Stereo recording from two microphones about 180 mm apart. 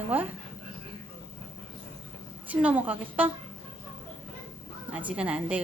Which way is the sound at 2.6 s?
10° right (ahead or behind).